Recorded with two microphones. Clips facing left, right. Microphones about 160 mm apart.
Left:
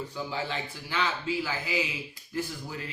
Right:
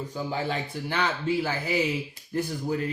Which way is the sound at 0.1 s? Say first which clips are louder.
Right 4 dB; 45° right (ahead or behind).